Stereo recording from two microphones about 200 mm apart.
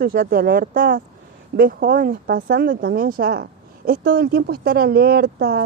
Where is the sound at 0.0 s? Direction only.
50° right (ahead or behind).